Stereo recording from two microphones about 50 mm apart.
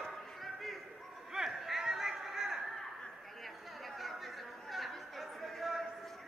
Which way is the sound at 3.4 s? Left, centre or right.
Centre.